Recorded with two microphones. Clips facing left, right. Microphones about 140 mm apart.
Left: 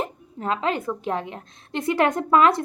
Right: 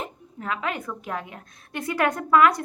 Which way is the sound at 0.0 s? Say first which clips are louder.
Left 5 dB; 30° left (ahead or behind).